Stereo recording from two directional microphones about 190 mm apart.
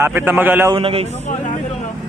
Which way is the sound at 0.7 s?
30° right (ahead or behind).